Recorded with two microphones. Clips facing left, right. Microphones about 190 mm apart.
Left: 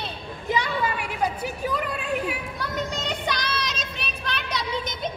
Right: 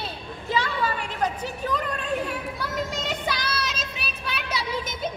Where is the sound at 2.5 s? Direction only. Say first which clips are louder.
Even; 5° right (ahead or behind).